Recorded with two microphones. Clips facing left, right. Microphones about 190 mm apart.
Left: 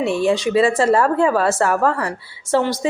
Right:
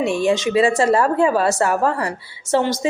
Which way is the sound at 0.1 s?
15° right (ahead or behind).